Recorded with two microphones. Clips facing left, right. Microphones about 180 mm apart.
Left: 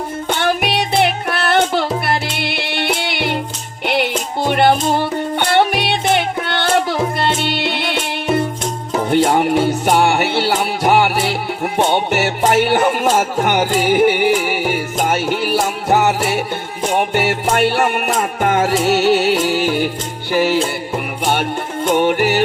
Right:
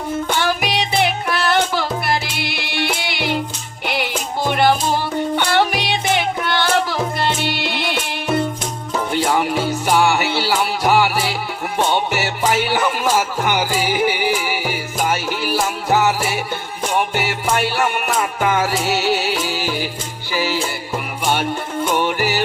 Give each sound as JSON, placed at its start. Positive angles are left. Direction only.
{"t": 0.3, "sound": "music", "side_deg": 55}
{"t": 9.0, "sound": "music", "side_deg": 55}
{"t": 21.8, "sound": "music", "side_deg": 55}